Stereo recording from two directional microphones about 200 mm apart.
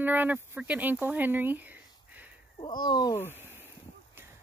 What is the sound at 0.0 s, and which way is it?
Speech, 10° right (ahead or behind).